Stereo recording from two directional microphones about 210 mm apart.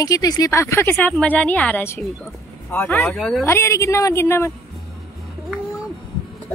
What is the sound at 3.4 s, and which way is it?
Speech, 10° left (ahead or behind).